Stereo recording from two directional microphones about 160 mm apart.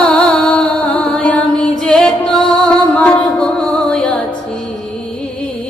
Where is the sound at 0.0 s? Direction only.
10° left (ahead or behind).